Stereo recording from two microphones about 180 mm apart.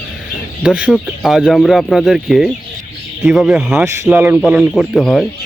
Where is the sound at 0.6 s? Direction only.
5° right (ahead or behind).